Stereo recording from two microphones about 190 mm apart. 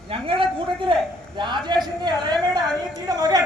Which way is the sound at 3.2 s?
20° right (ahead or behind).